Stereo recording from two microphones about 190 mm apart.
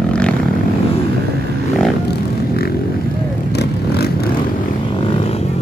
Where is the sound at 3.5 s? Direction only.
60° left (ahead or behind).